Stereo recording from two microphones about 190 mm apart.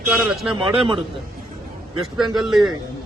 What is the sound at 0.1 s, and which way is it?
Speech, 5° right (ahead or behind).